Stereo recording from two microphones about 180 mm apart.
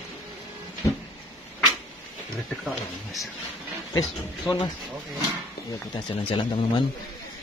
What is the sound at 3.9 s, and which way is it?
Speech, 20° left (ahead or behind).